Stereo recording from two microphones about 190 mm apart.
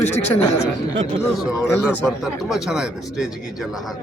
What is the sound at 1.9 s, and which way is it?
Speech, centre (ahead or behind).